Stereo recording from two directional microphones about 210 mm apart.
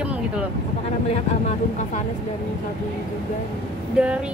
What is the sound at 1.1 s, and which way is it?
Speech, 35° left (ahead or behind).